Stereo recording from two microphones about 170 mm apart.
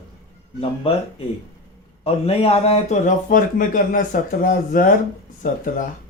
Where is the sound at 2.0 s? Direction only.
35° left (ahead or behind); by 5.8 s 50° left (ahead or behind).